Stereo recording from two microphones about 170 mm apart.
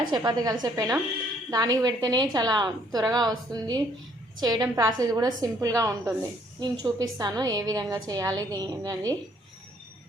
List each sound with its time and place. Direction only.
0.1 s a woman's voice: 20° right (ahead or behind)